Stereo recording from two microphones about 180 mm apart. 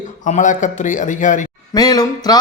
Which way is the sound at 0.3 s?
45° left (ahead or behind).